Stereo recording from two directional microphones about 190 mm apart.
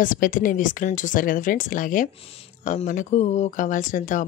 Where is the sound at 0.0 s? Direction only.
45° left (ahead or behind).